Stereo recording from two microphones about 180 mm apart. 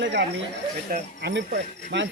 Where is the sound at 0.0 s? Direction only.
70° right (ahead or behind).